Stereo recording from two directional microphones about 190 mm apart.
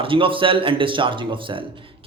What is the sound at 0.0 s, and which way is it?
A man's voice, 25° right (ahead or behind).